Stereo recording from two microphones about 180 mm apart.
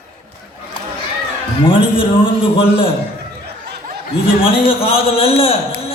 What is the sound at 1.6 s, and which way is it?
A man's voice, 30° left (ahead or behind).